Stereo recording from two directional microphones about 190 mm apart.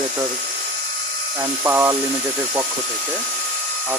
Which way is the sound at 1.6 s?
10° right (ahead or behind).